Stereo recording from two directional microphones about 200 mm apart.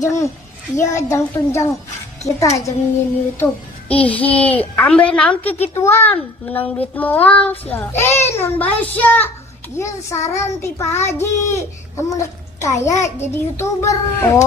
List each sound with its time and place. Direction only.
0.0 s a child's voice: 15° left (ahead or behind)
3.9 s a child's voice: 5° left (ahead or behind)